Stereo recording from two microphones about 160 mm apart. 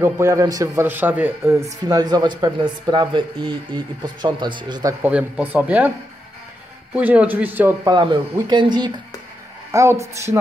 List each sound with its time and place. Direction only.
0.0 s a man's voice: 15° right (ahead or behind)
5.0 s a man's voice: 10° right (ahead or behind)
7.0 s a man's voice: 10° right (ahead or behind)
7.8 s speech: 30° right (ahead or behind)